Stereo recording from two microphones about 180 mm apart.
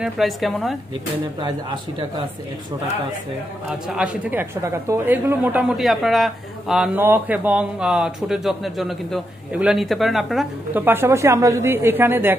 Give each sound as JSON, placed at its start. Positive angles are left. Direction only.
{"t": 0.0, "sound": "a woman's voice", "side_deg": 0}
{"t": 1.4, "sound": "a man's voice", "side_deg": -25}
{"t": 3.8, "sound": "a woman's voice", "side_deg": -5}